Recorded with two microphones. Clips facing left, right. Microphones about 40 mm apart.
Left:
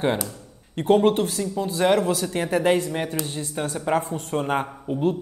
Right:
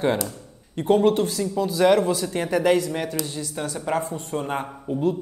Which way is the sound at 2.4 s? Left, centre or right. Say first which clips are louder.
Right 1 dB; left.